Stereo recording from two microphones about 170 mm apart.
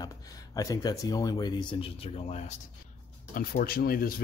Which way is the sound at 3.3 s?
60° left (ahead or behind).